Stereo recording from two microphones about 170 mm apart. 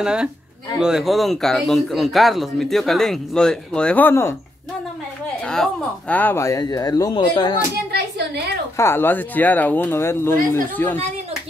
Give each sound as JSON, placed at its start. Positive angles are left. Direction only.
{"t": 0.0, "sound": "speech", "side_deg": -5}
{"t": 5.5, "sound": "speech", "side_deg": 5}
{"t": 8.7, "sound": "speech", "side_deg": 15}